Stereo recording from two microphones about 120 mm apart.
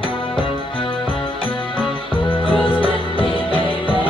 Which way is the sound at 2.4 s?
45° left (ahead or behind).